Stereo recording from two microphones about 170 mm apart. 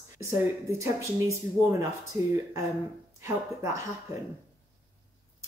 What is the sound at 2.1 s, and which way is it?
Speech, 15° right (ahead or behind).